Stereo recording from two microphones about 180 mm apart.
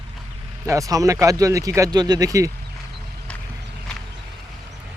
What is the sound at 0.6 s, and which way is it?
Speech, 20° right (ahead or behind).